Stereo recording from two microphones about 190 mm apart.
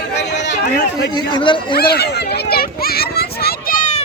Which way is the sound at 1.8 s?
55° left (ahead or behind).